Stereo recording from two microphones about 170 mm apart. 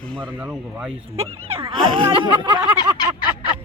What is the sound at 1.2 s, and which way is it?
Speech, 35° right (ahead or behind).